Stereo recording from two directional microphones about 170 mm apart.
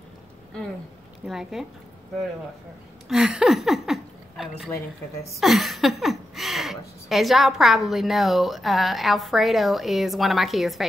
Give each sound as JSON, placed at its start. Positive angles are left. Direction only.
{"t": 1.2, "sound": "speech", "side_deg": 0}
{"t": 3.1, "sound": "a sound", "side_deg": 0}
{"t": 5.3, "sound": "speech", "side_deg": 0}